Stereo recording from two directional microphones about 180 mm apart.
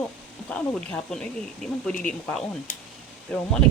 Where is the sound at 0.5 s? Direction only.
5° left (ahead or behind).